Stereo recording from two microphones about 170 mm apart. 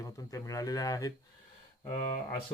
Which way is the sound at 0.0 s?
20° left (ahead or behind).